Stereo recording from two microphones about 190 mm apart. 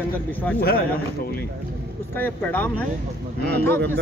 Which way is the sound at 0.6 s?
50° left (ahead or behind).